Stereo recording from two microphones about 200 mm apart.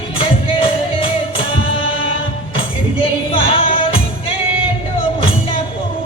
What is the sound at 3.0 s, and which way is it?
Music, 30° left (ahead or behind).